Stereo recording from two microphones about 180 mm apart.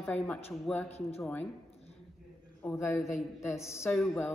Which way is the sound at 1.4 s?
35° left (ahead or behind).